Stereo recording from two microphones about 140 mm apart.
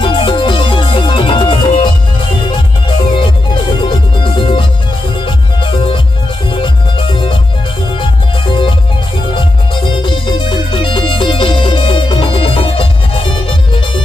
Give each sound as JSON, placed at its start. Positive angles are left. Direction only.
{"t": 0.0, "sound": "music", "side_deg": 40}
{"t": 3.8, "sound": "music", "side_deg": 35}